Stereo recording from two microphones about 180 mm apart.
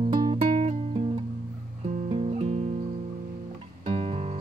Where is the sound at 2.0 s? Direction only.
35° right (ahead or behind).